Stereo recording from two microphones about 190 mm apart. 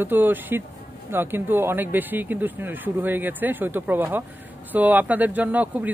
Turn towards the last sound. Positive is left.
turn(degrees=-10)  # may be behind; listen again after turning